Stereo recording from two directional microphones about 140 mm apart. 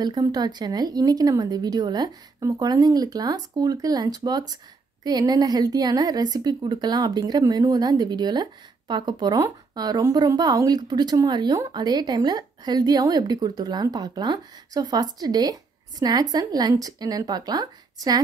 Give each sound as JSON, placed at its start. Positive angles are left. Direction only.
{"t": 0.0, "sound": "a woman's voice", "side_deg": -30}